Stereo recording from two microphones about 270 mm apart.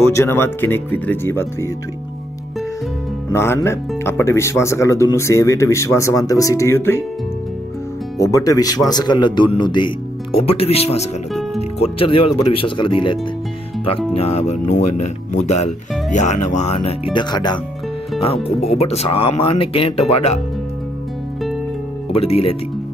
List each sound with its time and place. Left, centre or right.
0.0 s speech: centre
3.3 s speech: centre
8.2 s speech: centre
22.1 s speech: left